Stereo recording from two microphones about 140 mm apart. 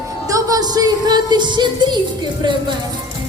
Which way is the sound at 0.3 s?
25° right (ahead or behind).